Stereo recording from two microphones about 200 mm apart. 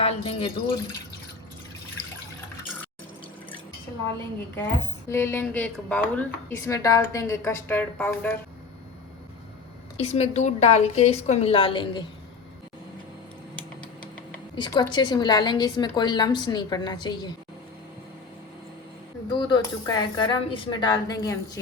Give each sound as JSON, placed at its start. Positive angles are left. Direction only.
{"t": 0.0, "sound": "a woman's voice", "side_deg": 25}
{"t": 5.0, "sound": "a woman's voice", "side_deg": 10}
{"t": 10.0, "sound": "a woman's voice", "side_deg": 30}
{"t": 13.6, "sound": "typing", "side_deg": 5}
{"t": 14.5, "sound": "a woman's voice", "side_deg": 25}
{"t": 19.3, "sound": "a woman's voice", "side_deg": 20}